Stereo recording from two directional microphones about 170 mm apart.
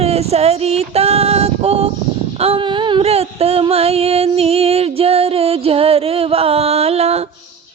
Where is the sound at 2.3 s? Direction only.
35° right (ahead or behind).